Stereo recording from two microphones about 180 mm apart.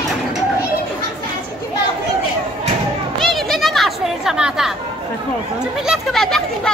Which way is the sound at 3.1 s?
Centre (ahead or behind).